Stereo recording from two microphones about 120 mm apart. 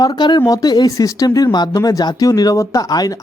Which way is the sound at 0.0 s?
40° left (ahead or behind).